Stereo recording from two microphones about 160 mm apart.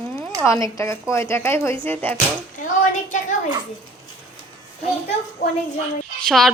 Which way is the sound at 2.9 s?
50° left (ahead or behind).